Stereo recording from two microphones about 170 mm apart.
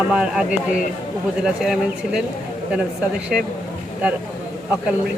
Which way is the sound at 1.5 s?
5° right (ahead or behind).